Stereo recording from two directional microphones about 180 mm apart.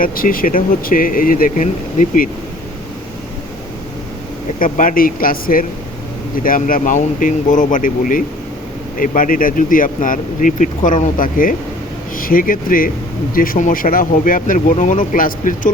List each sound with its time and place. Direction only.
0.0 s speech: 50° left (ahead or behind)
4.6 s speech: 50° left (ahead or behind)